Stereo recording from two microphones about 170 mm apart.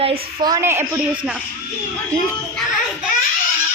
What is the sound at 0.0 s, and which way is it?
Speech, 35° right (ahead or behind).